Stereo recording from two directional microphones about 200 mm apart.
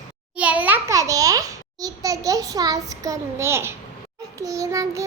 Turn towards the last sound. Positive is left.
turn(degrees=-15)  # may be behind; listen again after turning